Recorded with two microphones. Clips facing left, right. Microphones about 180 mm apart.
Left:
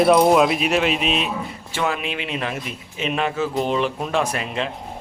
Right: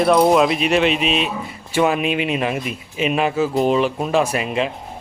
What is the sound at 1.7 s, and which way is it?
A man's voice, 15° right (ahead or behind).